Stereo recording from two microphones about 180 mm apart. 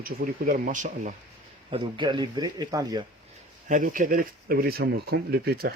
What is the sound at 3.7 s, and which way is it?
Speech, 50° right (ahead or behind).